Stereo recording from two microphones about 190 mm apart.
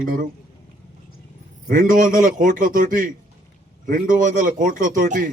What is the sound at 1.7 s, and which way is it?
Speech, 45° right (ahead or behind).